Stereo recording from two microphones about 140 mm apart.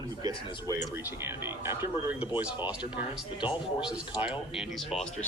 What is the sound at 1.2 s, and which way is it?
Speech, 15° right (ahead or behind).